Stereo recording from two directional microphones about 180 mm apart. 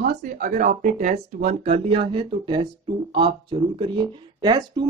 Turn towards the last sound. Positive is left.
turn(degrees=-25)  # may be behind; listen again after turning